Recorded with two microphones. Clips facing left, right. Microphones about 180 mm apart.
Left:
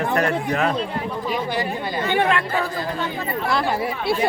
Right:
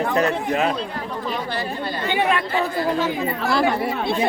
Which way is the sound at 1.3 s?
15° left (ahead or behind).